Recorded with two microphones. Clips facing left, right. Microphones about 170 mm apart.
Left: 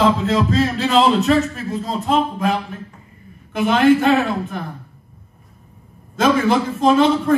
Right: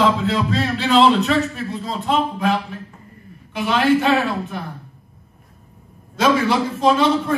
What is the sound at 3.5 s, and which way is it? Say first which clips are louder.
Speech: left 3 dB; 45° left (ahead or behind).